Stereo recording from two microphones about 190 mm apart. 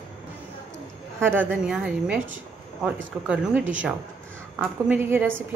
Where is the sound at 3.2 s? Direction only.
5° right (ahead or behind).